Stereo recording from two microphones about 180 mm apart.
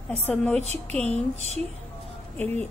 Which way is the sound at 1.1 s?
40° left (ahead or behind).